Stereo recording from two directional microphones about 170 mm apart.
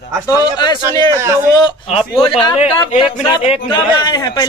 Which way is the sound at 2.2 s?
30° left (ahead or behind).